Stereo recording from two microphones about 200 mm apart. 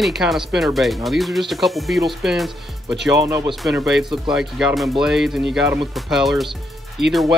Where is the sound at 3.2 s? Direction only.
20° right (ahead or behind).